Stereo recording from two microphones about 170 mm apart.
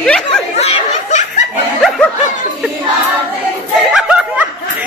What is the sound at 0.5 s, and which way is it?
Snicker, 40° left (ahead or behind).